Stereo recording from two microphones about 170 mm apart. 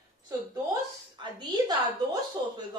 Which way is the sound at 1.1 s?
25° right (ahead or behind).